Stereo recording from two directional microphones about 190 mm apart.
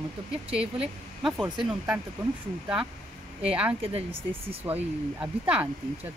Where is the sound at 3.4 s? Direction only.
5° right (ahead or behind).